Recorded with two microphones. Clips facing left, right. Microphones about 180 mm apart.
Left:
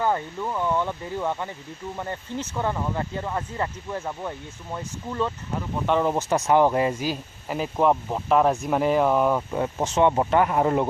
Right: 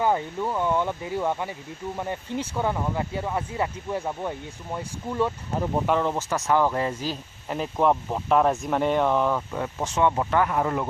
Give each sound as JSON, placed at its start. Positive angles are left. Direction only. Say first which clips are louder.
{"t": 0.0, "sound": "speech", "louder": "right 1 dB", "side_deg": -10}
{"t": 6.0, "sound": "speech", "louder": "left 3 dB", "side_deg": 15}